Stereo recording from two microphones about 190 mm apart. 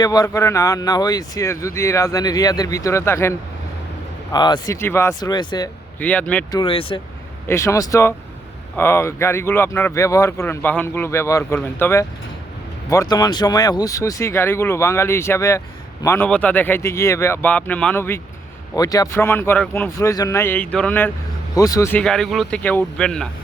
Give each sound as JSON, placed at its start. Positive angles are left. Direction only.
{"t": 0.0, "sound": "speech", "side_deg": 20}
{"t": 6.0, "sound": "speech", "side_deg": 10}
{"t": 6.5, "sound": "speech", "side_deg": 25}
{"t": 7.4, "sound": "speech", "side_deg": 15}
{"t": 22.0, "sound": "a man's voice", "side_deg": 0}